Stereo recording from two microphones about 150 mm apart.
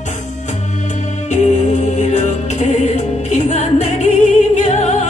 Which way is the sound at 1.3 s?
50° left (ahead or behind).